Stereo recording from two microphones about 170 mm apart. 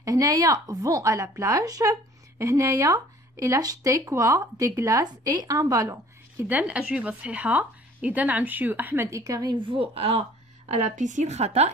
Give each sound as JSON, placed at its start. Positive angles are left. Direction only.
{"t": 0.0, "sound": "a woman's voice", "side_deg": -20}
{"t": 6.4, "sound": "a woman's voice", "side_deg": -10}